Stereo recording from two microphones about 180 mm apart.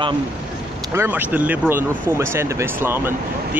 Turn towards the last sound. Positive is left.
turn(degrees=-15)  # may be behind; listen again after turning